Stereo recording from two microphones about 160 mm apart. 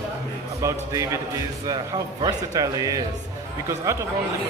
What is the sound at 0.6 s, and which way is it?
Speech, 20° right (ahead or behind).